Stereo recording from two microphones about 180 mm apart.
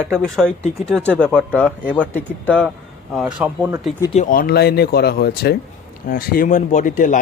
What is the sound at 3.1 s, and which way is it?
Speech, 5° right (ahead or behind).